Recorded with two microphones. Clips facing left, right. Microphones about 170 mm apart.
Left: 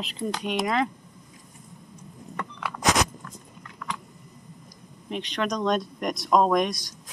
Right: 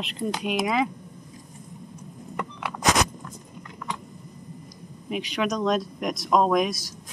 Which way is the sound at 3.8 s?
25° right (ahead or behind).